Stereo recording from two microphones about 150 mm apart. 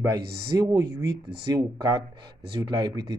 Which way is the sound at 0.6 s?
25° right (ahead or behind).